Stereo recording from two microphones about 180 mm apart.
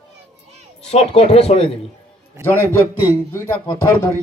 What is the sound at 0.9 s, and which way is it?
Speech, 35° left (ahead or behind).